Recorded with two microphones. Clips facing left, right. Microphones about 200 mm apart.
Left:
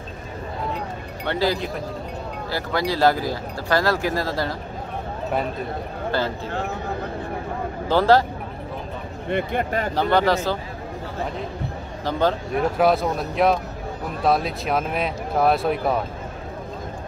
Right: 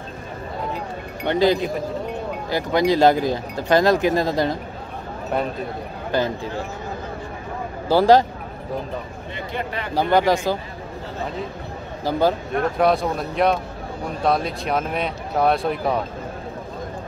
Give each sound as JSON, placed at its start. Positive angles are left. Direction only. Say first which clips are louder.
{"t": 1.2, "sound": "speech", "louder": "right 5 dB", "side_deg": -20}
{"t": 6.1, "sound": "speech", "louder": "right 3 dB", "side_deg": -15}
{"t": 7.9, "sound": "speech", "louder": "right 3 dB", "side_deg": -15}
{"t": 9.3, "sound": "speech", "louder": "left 6 dB", "side_deg": 50}
{"t": 9.9, "sound": "speech", "louder": "right 2 dB", "side_deg": -10}
{"t": 12.0, "sound": "speech", "louder": "right 2 dB", "side_deg": -10}
{"t": 12.5, "sound": "speech", "louder": "left 2 dB", "side_deg": 5}